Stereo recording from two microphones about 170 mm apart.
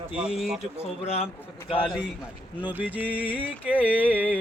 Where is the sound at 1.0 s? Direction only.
40° left (ahead or behind).